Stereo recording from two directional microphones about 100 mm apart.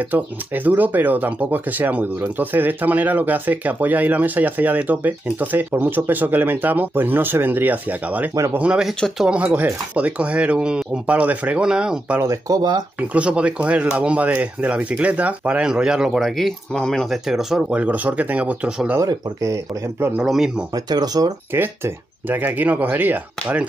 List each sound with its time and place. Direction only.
0.1 s speech: 15° right (ahead or behind)
12.2 s speech: 35° right (ahead or behind)
13.1 s speech: 10° right (ahead or behind)
18.9 s speech: 30° right (ahead or behind)
20.2 s speech: 5° right (ahead or behind)
20.7 s speech: 40° right (ahead or behind)
21.5 s speech: 20° right (ahead or behind)